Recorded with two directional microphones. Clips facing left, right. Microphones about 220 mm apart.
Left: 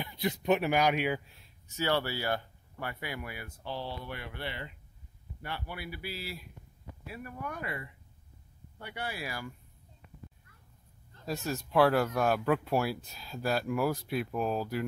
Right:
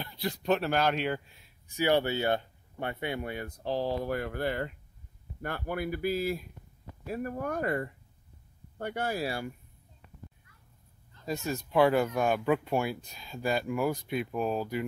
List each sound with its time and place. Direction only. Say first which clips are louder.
0.0 s a man's voice: left 1 dB; 20° left (ahead or behind)
1.7 s speech: right 5 dB; 15° right (ahead or behind); by 9.3 s 45° right (ahead or behind)
11.2 s speech: right 2 dB; centre (ahead or behind)